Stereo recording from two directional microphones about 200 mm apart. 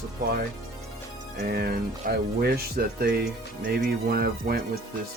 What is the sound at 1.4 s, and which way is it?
Speech, 50° right (ahead or behind).